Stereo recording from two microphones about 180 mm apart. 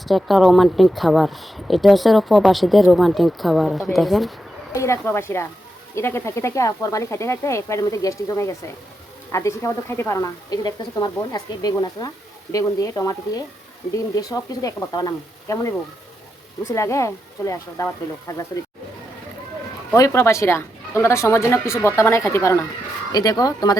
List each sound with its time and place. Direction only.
0.0 s speech: centre (ahead or behind)
4.7 s a woman's voice: 15° left (ahead or behind)
16.7 s a woman's voice: 15° left (ahead or behind)
19.9 s a woman's voice: 15° left (ahead or behind)